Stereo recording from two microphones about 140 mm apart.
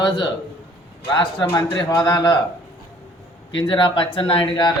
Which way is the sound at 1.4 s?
20° left (ahead or behind).